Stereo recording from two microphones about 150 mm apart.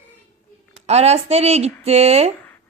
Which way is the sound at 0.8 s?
45° right (ahead or behind).